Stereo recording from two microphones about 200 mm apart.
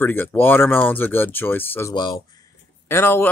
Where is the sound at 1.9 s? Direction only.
20° left (ahead or behind).